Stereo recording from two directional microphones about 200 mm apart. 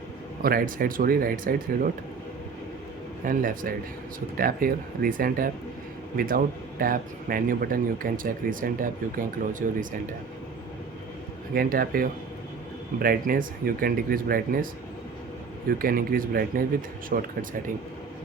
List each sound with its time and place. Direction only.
0.4 s speech: 45° right (ahead or behind)
3.2 s speech: 45° right (ahead or behind)
11.5 s speech: 45° right (ahead or behind)
15.8 s speech: 45° right (ahead or behind)